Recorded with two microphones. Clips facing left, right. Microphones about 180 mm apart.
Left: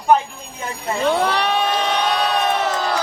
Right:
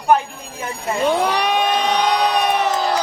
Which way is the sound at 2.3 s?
15° right (ahead or behind).